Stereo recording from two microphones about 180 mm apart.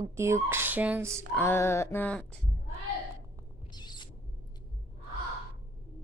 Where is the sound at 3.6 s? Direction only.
25° left (ahead or behind).